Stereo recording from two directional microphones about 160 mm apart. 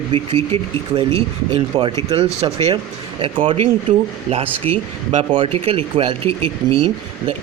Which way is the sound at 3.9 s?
45° right (ahead or behind).